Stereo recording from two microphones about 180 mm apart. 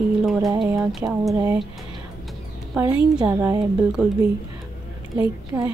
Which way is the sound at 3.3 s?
15° right (ahead or behind).